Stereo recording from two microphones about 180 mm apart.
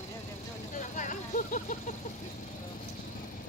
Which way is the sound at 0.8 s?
45° left (ahead or behind).